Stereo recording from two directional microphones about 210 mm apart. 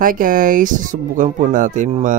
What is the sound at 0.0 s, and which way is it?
Speech, 40° right (ahead or behind).